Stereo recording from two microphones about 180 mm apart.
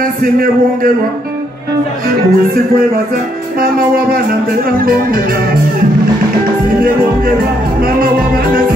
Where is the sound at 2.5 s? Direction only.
55° right (ahead or behind).